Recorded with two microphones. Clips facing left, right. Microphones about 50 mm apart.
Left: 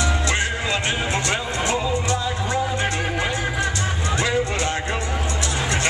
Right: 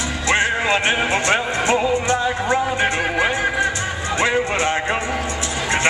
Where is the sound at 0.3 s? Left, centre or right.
Right.